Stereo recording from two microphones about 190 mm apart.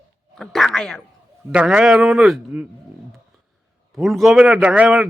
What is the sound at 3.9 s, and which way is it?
A man's voice, centre (ahead or behind).